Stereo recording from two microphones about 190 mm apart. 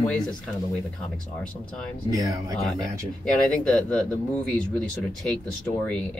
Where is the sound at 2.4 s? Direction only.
15° right (ahead or behind).